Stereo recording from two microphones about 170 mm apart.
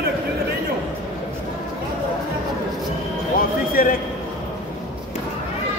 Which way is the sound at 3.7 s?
55° left (ahead or behind).